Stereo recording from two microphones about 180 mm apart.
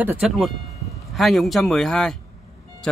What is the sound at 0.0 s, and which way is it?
A man's voice, 5° right (ahead or behind).